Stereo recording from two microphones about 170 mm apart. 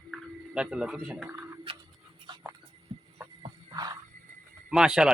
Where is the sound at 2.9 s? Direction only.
35° right (ahead or behind).